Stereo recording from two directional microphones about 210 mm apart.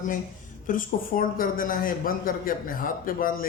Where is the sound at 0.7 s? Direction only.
40° left (ahead or behind).